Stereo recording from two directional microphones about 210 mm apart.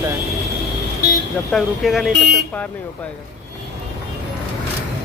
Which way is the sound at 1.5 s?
Centre (ahead or behind).